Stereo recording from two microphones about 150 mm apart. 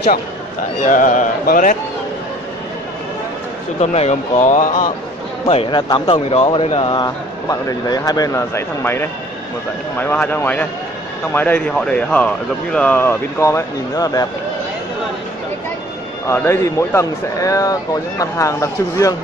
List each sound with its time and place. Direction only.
0.8 s speech: 60° left (ahead or behind)
3.8 s speech: 45° left (ahead or behind)
5.5 s speech: 35° left (ahead or behind)
16.3 s speech: 20° left (ahead or behind)